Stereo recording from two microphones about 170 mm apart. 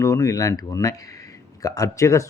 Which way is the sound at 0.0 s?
20° left (ahead or behind).